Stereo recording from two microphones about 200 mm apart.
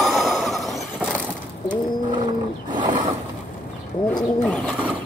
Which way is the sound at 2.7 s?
25° right (ahead or behind).